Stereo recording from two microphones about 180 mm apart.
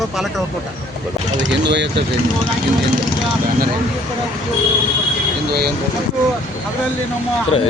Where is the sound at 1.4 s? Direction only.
75° right (ahead or behind).